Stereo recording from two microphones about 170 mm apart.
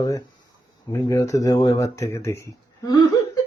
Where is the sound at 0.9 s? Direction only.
20° left (ahead or behind).